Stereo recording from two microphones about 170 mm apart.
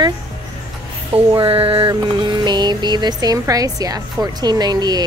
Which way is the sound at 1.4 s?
30° right (ahead or behind).